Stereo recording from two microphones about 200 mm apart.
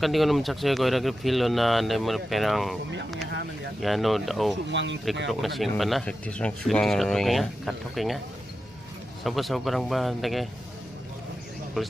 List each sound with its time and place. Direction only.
0.0 s speech: centre (ahead or behind)
3.8 s speech: centre (ahead or behind)
4.6 s speech: 65° right (ahead or behind)
5.3 s speech: centre (ahead or behind)
9.2 s speech: centre (ahead or behind)
11.8 s speech: centre (ahead or behind)